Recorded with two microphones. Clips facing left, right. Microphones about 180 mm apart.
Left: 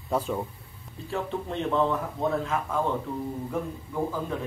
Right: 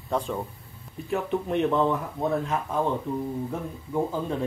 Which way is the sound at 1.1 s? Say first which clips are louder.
Right 5 dB; 15° right (ahead or behind).